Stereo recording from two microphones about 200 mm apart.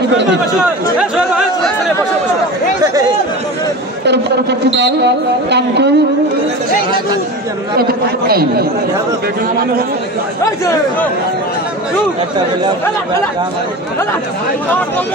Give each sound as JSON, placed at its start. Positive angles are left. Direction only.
{"t": 0.6, "sound": "speech", "side_deg": -5}
{"t": 4.0, "sound": "speech", "side_deg": -60}
{"t": 7.7, "sound": "speech", "side_deg": -50}
{"t": 10.4, "sound": "a man's voice", "side_deg": 15}